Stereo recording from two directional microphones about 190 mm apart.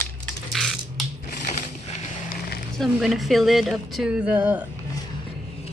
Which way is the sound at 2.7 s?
Centre (ahead or behind).